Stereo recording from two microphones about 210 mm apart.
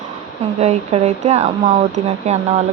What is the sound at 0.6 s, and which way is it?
Speech, 35° right (ahead or behind).